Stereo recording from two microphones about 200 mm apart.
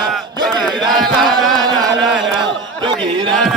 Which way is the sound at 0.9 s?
Centre (ahead or behind).